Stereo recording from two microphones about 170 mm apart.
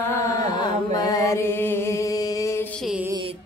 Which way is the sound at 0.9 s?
20° left (ahead or behind).